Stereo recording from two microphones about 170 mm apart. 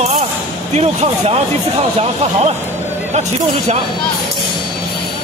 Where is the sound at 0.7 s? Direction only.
40° right (ahead or behind).